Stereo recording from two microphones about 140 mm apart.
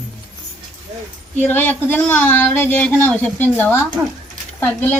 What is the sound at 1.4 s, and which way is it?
Speech, 15° left (ahead or behind).